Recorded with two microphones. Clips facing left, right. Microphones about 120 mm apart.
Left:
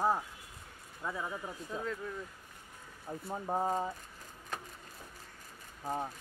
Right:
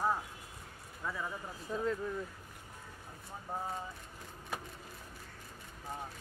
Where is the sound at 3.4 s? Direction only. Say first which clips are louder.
Left 7 dB; 50° left (ahead or behind).